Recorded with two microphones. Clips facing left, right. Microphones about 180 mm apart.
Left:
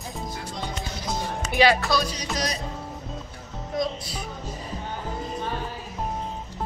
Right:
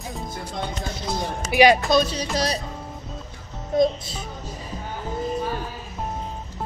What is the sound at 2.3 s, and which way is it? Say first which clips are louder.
Music: right 5 dB; 30° right (ahead or behind).